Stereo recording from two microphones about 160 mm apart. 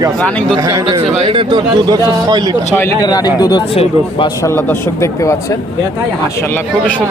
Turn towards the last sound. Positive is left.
turn(degrees=20)  # may be behind; listen again after turning